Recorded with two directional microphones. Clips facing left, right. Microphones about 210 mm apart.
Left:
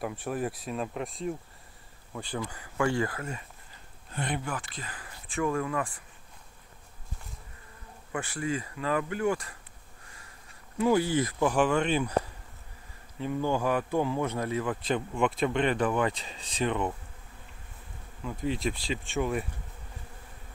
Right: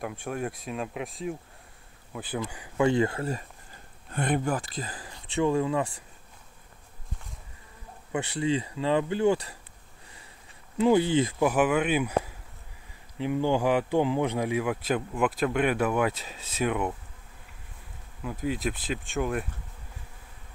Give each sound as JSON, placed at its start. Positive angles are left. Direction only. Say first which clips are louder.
{"t": 0.0, "sound": "speech", "louder": "left 1 dB", "side_deg": 0}
{"t": 4.1, "sound": "speech", "louder": "right 6 dB", "side_deg": -50}
{"t": 8.1, "sound": "speech", "louder": "right 5 dB", "side_deg": -25}
{"t": 10.8, "sound": "speech", "louder": "right 3 dB", "side_deg": -20}
{"t": 11.3, "sound": "speech", "louder": "right 2 dB", "side_deg": -10}
{"t": 18.2, "sound": "speech", "louder": "right 1 dB", "side_deg": -5}